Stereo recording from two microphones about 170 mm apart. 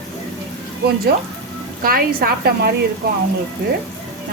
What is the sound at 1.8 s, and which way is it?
Speech, 60° right (ahead or behind).